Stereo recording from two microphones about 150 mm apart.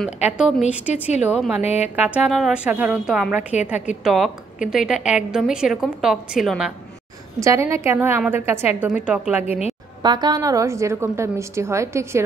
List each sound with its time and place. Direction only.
0.2 s a woman's voice: 5° right (ahead or behind)
1.6 s speech: 45° left (ahead or behind)
2.0 s a woman's voice: 10° right (ahead or behind)
7.3 s a woman's voice: 20° right (ahead or behind)
9.5 s a woman's voice: 45° left (ahead or behind)
10.0 s a woman's voice: 30° right (ahead or behind)